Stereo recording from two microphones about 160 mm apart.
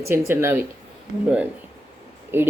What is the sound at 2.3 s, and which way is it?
Speech, 15° right (ahead or behind).